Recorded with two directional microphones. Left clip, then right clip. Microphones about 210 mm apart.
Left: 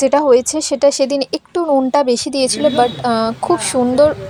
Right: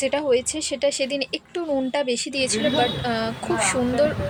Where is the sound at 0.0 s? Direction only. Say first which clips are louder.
Left 10 dB; 30° left (ahead or behind).